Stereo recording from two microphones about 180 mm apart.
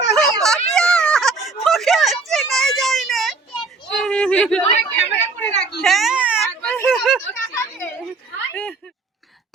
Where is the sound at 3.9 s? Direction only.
5° left (ahead or behind).